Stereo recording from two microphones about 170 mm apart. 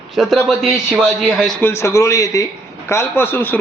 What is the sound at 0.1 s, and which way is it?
A man's voice, centre (ahead or behind).